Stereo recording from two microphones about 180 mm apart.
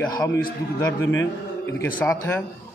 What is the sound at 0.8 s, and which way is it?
A man's voice, 15° left (ahead or behind).